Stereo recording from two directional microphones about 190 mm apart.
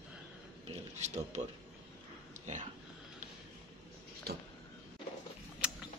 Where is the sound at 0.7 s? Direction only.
35° right (ahead or behind).